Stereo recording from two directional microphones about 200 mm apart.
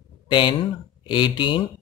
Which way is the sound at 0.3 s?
25° left (ahead or behind).